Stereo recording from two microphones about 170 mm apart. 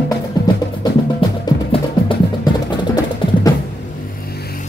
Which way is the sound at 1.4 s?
30° left (ahead or behind).